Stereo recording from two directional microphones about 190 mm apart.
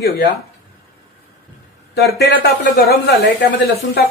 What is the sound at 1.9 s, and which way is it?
Speech, 55° left (ahead or behind).